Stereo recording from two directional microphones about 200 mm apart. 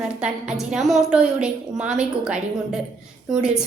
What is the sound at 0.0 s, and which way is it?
A woman's voice, 5° right (ahead or behind).